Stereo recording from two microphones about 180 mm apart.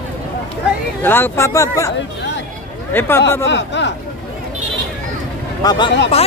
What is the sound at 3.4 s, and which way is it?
Speech, 80° left.